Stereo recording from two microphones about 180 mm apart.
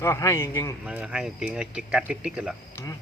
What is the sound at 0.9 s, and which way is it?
Speech, 5° right (ahead or behind).